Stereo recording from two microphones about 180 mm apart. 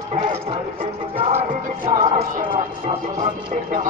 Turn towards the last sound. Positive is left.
turn(degrees=-45)  # may be behind; listen again after turning